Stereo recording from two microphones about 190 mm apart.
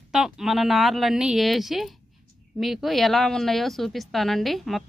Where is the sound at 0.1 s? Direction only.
Centre (ahead or behind).